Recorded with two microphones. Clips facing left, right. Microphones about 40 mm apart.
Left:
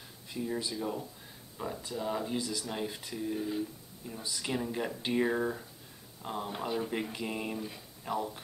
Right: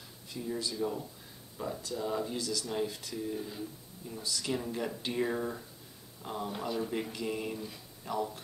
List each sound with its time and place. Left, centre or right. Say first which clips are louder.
0.3 s speech: left 1 dB; centre